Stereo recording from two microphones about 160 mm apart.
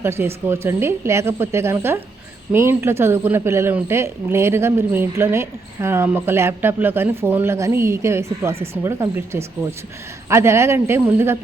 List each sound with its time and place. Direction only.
0.0 s a man's voice: 15° right (ahead or behind)